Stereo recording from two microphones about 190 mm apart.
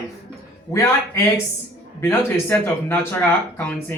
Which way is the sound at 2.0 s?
10° left (ahead or behind).